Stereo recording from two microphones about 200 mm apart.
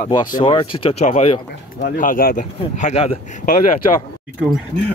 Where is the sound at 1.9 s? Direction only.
40° left (ahead or behind).